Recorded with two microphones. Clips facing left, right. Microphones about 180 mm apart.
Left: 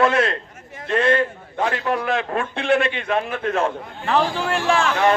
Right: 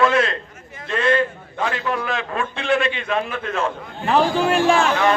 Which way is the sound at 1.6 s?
45° left (ahead or behind).